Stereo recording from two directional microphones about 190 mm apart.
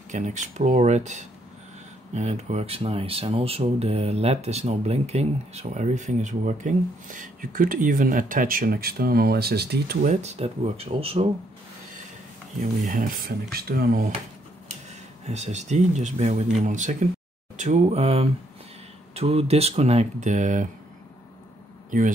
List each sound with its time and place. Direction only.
0.1 s speech: 40° right (ahead or behind); by 9.9 s 55° right (ahead or behind)
10.0 s speech: 35° right (ahead or behind)
12.5 s speech: 45° right (ahead or behind)
15.2 s speech: 35° right (ahead or behind)
21.9 s speech: 45° right (ahead or behind)